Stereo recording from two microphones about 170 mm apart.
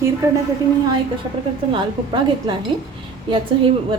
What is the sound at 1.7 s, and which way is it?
Speech, 25° right (ahead or behind).